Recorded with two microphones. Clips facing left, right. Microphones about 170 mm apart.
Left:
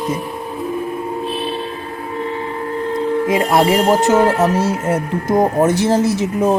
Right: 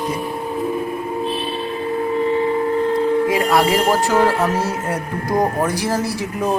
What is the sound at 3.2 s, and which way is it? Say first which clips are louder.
Speech: left 2 dB; 25° left (ahead or behind).